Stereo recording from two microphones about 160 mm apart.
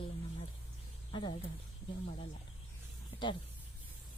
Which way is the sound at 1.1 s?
30° left (ahead or behind).